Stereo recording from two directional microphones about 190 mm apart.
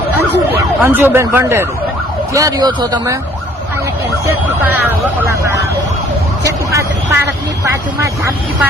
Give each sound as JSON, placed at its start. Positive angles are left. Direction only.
{"t": 0.1, "sound": "speech", "side_deg": -10}
{"t": 4.6, "sound": "speech", "side_deg": -10}